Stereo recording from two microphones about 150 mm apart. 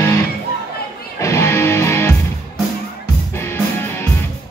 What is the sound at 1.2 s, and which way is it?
Music, 20° left (ahead or behind).